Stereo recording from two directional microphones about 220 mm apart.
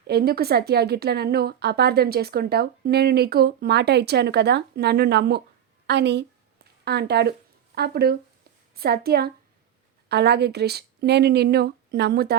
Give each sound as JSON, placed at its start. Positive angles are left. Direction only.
{"t": 0.1, "sound": "a woman's voice", "side_deg": -45}